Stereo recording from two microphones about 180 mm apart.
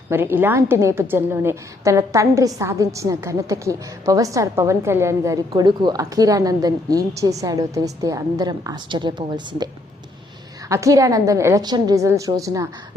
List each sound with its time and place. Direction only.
0.1 s a woman's voice: 10° right (ahead or behind)
10.7 s a woman's voice: 15° right (ahead or behind)